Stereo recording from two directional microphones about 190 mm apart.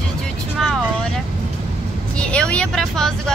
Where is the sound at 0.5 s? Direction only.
Centre (ahead or behind).